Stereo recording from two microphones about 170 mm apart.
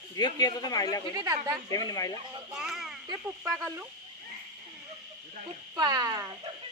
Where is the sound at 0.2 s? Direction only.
25° left (ahead or behind).